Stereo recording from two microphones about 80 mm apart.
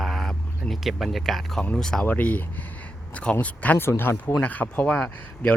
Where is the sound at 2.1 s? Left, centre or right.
Left.